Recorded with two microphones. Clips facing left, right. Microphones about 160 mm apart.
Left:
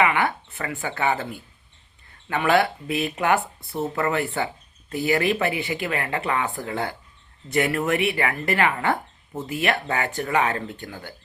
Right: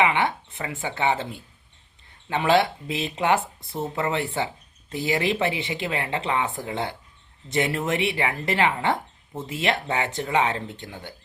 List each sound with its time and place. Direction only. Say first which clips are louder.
0.0 s speech: left 1 dB; 25° right (ahead or behind)